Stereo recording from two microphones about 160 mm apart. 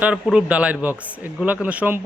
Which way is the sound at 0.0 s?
5° right (ahead or behind).